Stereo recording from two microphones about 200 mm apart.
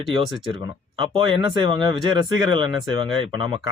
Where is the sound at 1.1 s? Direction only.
25° right (ahead or behind).